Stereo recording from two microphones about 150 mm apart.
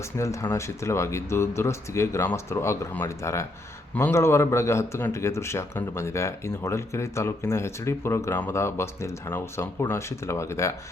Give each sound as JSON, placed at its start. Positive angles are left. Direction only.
{"t": 0.0, "sound": "a man's voice", "side_deg": 20}